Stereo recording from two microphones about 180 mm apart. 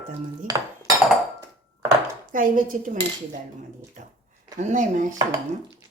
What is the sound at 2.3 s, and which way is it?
Dishes, 50° right (ahead or behind).